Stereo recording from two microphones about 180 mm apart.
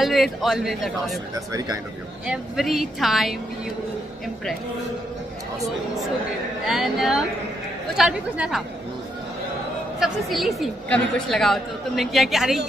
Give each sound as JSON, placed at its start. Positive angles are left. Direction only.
{"t": 0.0, "sound": "a woman's voice", "side_deg": 0}
{"t": 1.3, "sound": "speech", "side_deg": -20}
{"t": 2.2, "sound": "a woman's voice", "side_deg": -5}
{"t": 6.6, "sound": "a woman's voice", "side_deg": 0}
{"t": 9.9, "sound": "a woman's voice", "side_deg": 0}